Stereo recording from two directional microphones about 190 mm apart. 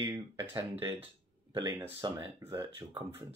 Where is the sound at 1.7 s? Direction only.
15° right (ahead or behind).